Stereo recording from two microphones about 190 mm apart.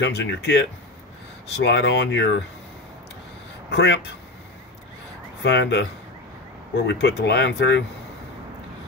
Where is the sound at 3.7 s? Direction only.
65° left (ahead or behind).